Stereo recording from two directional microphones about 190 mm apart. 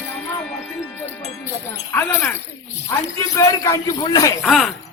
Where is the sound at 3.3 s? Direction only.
15° left (ahead or behind).